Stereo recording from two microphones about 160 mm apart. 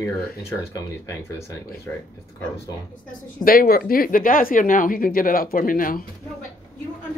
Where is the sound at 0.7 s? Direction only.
20° left (ahead or behind).